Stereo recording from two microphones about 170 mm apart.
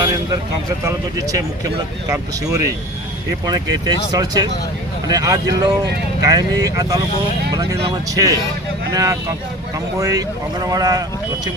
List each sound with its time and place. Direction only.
0.9 s speech: 20° right (ahead or behind)